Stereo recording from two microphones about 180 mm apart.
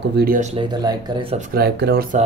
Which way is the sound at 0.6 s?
20° right (ahead or behind).